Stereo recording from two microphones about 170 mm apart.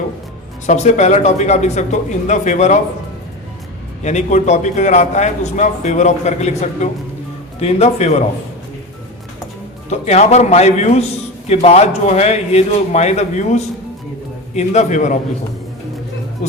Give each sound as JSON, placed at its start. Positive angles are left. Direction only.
{"t": 0.7, "sound": "a man's voice", "side_deg": 45}
{"t": 4.0, "sound": "a man's voice", "side_deg": 45}
{"t": 9.9, "sound": "a man's voice", "side_deg": 40}